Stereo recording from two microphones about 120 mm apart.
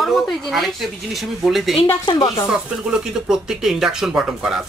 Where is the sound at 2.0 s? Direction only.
40° left (ahead or behind).